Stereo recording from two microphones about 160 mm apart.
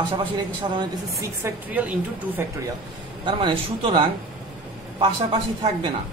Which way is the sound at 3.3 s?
30° right (ahead or behind).